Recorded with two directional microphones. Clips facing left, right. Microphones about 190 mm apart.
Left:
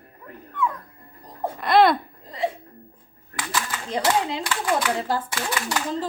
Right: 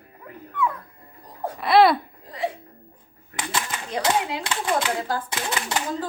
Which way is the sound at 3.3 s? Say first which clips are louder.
Even; 20° right (ahead or behind).